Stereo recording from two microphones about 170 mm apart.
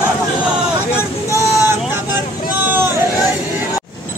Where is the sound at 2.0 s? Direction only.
10° right (ahead or behind).